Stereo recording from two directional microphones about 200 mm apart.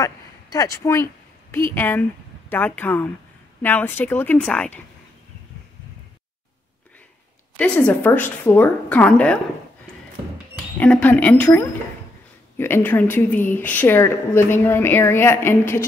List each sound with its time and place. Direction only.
0.0 s a woman's voice: 15° left (ahead or behind)
7.5 s a woman's voice: 5° left (ahead or behind)
10.8 s a woman's voice: 5° left (ahead or behind)